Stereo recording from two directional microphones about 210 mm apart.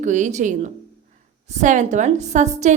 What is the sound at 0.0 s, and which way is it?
A woman's voice, 35° right (ahead or behind).